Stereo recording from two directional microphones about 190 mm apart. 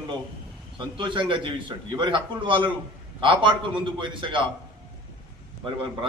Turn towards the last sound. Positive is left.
turn(degrees=-25)  # may be behind; listen again after turning